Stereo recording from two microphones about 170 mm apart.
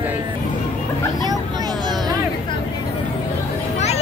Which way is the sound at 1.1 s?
25° right (ahead or behind).